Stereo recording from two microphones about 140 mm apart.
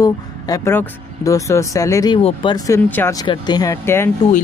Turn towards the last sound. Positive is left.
turn(degrees=15)  # may be behind; listen again after turning